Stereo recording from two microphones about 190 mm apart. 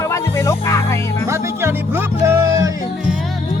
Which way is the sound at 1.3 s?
15° right (ahead or behind).